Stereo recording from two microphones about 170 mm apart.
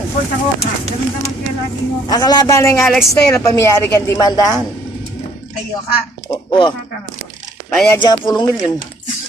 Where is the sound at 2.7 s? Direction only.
5° left (ahead or behind).